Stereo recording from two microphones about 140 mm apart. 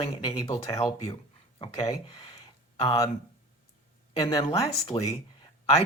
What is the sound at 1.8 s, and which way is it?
Speech, 25° left (ahead or behind).